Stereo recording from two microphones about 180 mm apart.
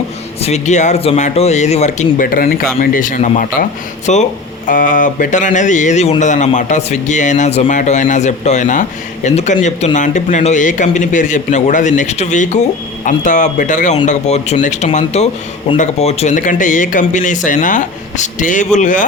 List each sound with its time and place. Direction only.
0.4 s speech: 40° left (ahead or behind)